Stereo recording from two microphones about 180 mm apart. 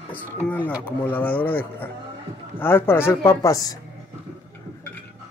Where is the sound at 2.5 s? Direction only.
10° left (ahead or behind).